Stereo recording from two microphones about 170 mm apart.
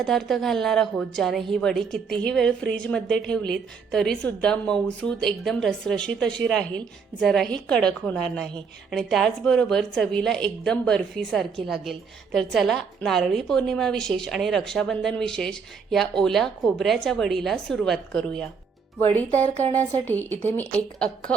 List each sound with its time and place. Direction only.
0.0 s a woman's voice: centre (ahead or behind)
19.3 s speech: 40° right (ahead or behind)
19.7 s a woman's voice: 10° left (ahead or behind)